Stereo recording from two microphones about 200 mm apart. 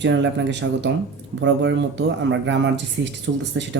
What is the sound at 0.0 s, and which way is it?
Speech, 60° right (ahead or behind).